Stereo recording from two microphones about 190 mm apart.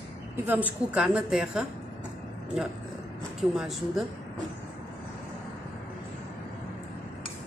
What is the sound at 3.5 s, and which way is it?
Speech, centre (ahead or behind).